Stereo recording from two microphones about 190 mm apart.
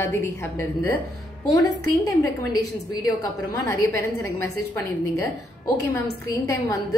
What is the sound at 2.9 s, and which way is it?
A woman's voice, 20° left (ahead or behind).